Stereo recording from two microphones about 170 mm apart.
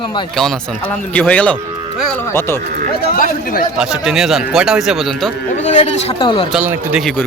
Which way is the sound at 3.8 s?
5° right (ahead or behind).